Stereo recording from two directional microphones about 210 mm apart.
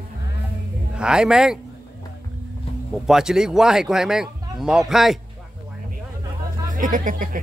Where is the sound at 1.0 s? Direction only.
5° right (ahead or behind).